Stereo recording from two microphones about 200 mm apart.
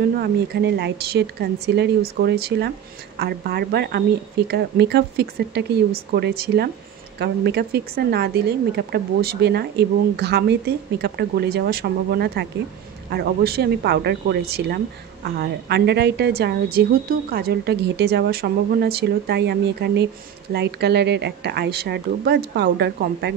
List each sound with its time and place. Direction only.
0.2 s speech: 60° right (ahead or behind)